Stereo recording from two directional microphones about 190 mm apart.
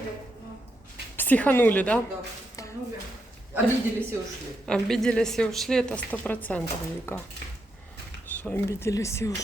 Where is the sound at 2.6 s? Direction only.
15° left (ahead or behind).